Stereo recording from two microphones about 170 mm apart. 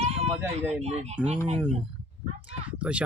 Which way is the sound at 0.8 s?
40° right (ahead or behind).